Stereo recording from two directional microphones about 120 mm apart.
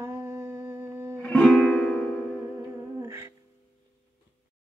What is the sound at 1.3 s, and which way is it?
Music, 10° left (ahead or behind).